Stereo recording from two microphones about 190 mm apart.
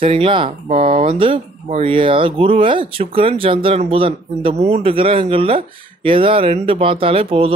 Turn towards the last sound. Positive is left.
turn(degrees=-30)  # may be behind; listen again after turning